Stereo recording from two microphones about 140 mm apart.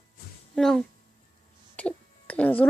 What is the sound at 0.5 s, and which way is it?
A child's voice, centre (ahead or behind).